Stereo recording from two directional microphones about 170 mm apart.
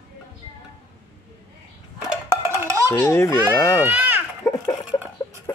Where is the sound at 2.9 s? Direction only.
15° left (ahead or behind).